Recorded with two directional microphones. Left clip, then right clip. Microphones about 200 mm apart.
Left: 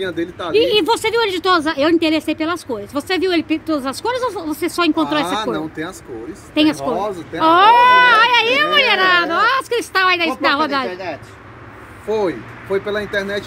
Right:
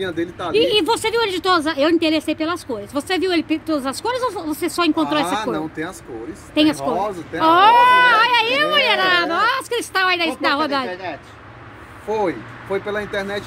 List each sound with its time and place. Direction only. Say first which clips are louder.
0.0 s speech: left 1 dB; centre (ahead or behind)
10.9 s speech: left 2 dB; 55° left (ahead or behind)
12.1 s speech: left 2 dB; centre (ahead or behind)